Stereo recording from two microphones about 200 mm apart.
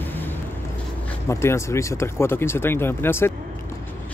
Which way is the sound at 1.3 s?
15° left (ahead or behind).